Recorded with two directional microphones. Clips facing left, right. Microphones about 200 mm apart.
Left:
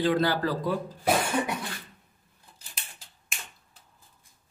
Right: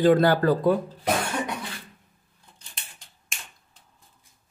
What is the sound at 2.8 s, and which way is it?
Finger snapping, 5° left (ahead or behind).